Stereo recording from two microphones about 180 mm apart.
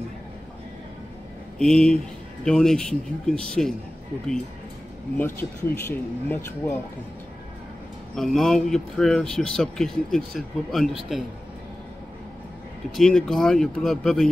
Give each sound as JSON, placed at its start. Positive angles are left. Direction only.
{"t": 1.6, "sound": "speech", "side_deg": 5}
{"t": 5.1, "sound": "speech", "side_deg": 10}
{"t": 8.2, "sound": "speech", "side_deg": 0}
{"t": 12.9, "sound": "speech", "side_deg": 0}